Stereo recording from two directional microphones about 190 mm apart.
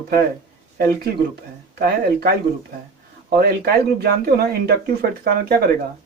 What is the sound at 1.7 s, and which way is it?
Speech, 55° right (ahead or behind).